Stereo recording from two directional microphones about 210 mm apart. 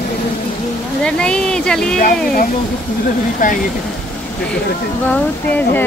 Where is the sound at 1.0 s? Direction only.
5° left (ahead or behind).